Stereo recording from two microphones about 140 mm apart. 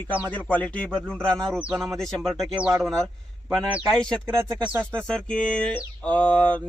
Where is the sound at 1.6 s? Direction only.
10° right (ahead or behind).